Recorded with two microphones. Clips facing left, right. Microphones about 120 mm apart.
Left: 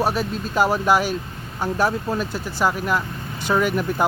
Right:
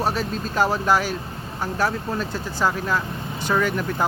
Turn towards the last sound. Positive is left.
turn(degrees=15)  # may be behind; listen again after turning